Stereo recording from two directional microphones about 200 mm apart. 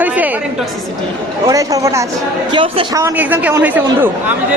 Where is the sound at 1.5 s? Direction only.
15° right (ahead or behind).